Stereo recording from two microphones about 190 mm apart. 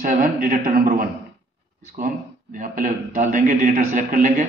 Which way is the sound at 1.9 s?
45° right (ahead or behind).